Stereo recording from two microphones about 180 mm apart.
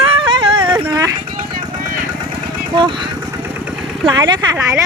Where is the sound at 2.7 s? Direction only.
25° right (ahead or behind).